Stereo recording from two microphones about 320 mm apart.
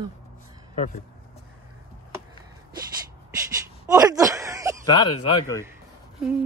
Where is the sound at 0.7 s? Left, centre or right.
Left.